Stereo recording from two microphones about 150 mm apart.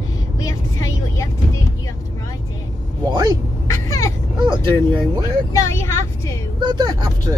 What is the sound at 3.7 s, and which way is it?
Vehicle, 20° left (ahead or behind).